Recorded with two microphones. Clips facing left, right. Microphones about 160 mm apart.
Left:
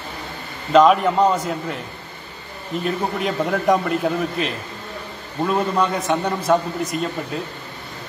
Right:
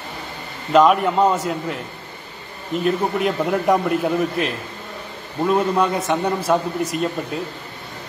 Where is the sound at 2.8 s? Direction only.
5° right (ahead or behind).